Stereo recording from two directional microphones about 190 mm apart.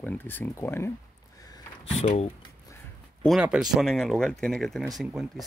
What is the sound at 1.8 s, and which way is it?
Speech, 35° left (ahead or behind).